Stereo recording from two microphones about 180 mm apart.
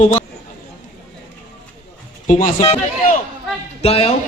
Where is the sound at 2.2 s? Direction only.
40° left (ahead or behind).